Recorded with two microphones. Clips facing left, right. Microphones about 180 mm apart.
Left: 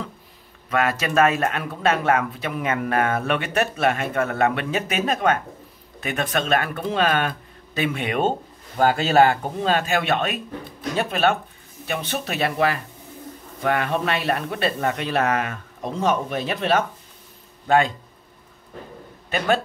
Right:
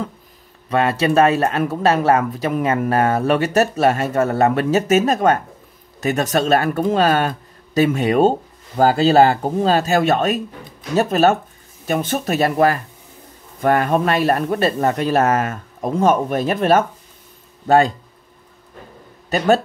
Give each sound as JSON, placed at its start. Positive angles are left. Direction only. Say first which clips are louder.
{"t": 0.7, "sound": "speech", "louder": "right 5 dB", "side_deg": -30}
{"t": 19.3, "sound": "speech", "louder": "right 6 dB", "side_deg": -40}